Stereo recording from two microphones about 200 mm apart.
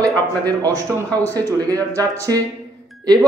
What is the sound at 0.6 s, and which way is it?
Speech, 15° right (ahead or behind).